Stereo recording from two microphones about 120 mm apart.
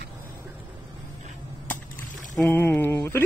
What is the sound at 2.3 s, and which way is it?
Speech, 15° left (ahead or behind).